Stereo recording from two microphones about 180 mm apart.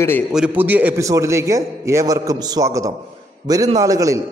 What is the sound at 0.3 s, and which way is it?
A man's voice, 5° right (ahead or behind).